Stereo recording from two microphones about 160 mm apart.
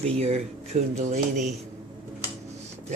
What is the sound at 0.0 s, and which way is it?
Speech, 40° right (ahead or behind).